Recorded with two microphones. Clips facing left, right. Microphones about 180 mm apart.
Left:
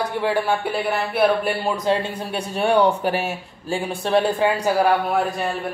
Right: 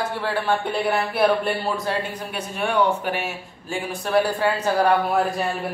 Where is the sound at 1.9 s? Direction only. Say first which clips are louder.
Left 7 dB; 20° left (ahead or behind).